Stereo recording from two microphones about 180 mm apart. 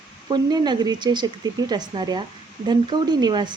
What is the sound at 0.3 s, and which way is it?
Speech, 25° right (ahead or behind).